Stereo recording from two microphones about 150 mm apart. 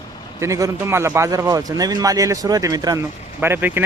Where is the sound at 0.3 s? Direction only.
20° right (ahead or behind).